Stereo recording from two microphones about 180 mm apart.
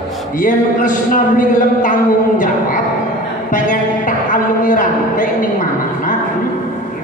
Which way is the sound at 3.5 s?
45° left (ahead or behind).